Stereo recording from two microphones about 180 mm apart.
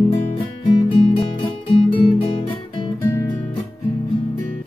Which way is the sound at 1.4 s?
30° left (ahead or behind).